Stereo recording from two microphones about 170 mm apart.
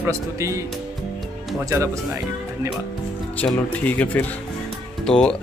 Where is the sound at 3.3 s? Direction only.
10° left (ahead or behind).